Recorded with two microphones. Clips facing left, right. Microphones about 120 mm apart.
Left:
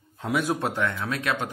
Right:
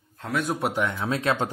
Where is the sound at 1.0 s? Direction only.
30° right (ahead or behind).